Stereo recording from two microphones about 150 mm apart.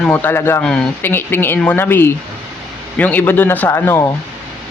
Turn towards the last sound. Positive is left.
turn(degrees=15)  # may be behind; listen again after turning